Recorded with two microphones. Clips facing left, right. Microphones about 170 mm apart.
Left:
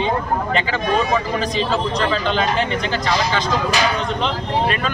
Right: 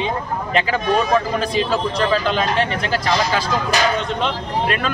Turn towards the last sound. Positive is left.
turn(degrees=0)  # may be behind; listen again after turning